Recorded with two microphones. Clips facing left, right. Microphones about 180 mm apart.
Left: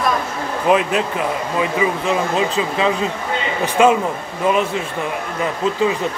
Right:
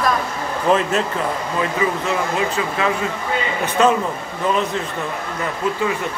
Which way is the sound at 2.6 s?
20° left (ahead or behind).